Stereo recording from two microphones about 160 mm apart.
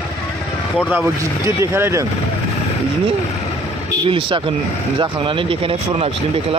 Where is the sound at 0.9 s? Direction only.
15° right (ahead or behind).